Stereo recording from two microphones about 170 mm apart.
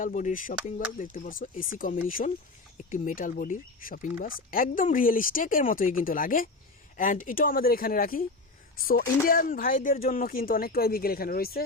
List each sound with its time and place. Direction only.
0.0 s speech: 50° left (ahead or behind)
9.2 s speech: 55° left (ahead or behind)